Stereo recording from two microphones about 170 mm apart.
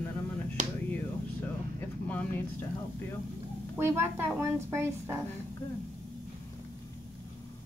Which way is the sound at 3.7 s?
15° right (ahead or behind).